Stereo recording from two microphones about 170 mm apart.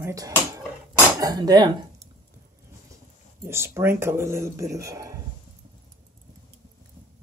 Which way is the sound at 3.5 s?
15° right (ahead or behind).